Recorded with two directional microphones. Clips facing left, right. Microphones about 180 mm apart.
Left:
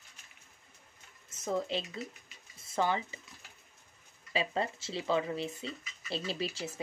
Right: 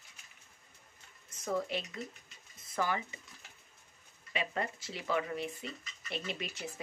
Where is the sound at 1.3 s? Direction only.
25° left (ahead or behind).